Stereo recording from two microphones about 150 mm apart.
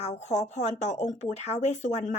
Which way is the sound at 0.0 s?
50° left (ahead or behind).